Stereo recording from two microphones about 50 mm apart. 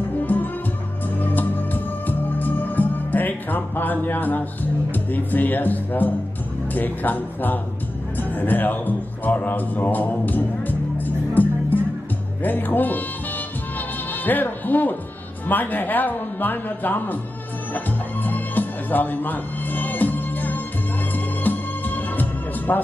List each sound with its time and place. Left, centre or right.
0.2 s music: left
4.9 s speech: left
8.2 s music: left
12.4 s speech: left
13.7 s music: left
15.4 s speech: left
17.7 s music: left